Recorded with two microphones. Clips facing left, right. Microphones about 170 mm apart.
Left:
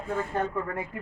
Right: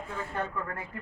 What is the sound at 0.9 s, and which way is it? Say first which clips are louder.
Speech: left 4 dB; 15° left (ahead or behind).